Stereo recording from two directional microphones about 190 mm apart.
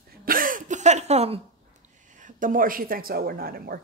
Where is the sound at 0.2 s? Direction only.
50° right (ahead or behind); by 1.4 s 35° right (ahead or behind).